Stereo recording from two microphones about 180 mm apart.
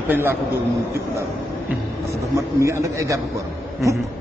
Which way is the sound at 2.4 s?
15° right (ahead or behind).